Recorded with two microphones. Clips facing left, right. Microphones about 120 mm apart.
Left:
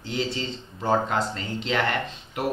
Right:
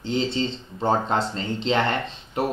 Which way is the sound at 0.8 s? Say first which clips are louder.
Right 1 dB; 25° right (ahead or behind).